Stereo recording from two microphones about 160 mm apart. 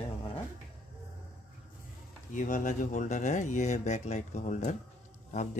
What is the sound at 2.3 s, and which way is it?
Speech, 55° left (ahead or behind).